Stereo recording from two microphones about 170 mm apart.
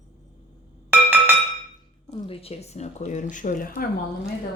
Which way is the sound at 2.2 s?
35° left (ahead or behind).